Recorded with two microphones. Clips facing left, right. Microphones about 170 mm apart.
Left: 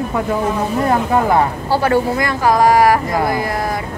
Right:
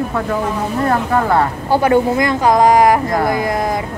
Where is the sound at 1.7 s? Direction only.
20° right (ahead or behind).